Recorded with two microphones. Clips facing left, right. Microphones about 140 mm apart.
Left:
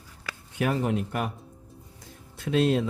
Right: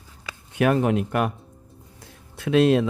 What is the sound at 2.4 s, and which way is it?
Speech, 90° right.